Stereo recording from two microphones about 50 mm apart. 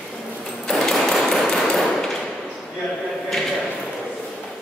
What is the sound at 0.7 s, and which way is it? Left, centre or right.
Hammer, centre.